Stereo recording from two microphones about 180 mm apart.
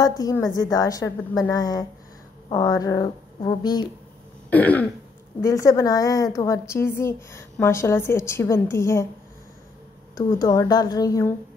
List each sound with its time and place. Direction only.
0.0 s a woman's voice: 20° left (ahead or behind)
4.5 s a woman's voice: 10° left (ahead or behind)
10.1 s a woman's voice: 20° left (ahead or behind)